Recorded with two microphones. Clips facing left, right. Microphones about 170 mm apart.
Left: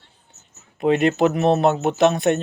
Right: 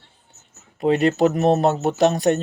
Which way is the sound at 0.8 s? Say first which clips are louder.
Even; 35° right (ahead or behind).